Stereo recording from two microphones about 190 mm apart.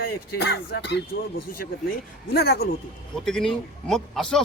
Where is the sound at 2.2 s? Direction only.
55° left (ahead or behind).